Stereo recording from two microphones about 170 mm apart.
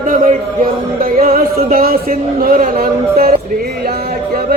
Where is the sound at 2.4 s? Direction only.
55° right (ahead or behind).